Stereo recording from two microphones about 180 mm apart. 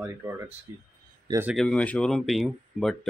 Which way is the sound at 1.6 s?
5° left (ahead or behind).